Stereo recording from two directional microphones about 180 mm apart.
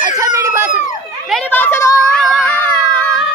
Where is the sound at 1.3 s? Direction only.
10° left (ahead or behind).